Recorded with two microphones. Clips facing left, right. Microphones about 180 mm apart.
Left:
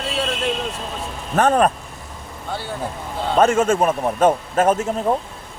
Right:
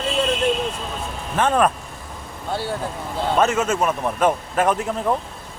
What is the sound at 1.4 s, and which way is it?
Speech, 40° left (ahead or behind).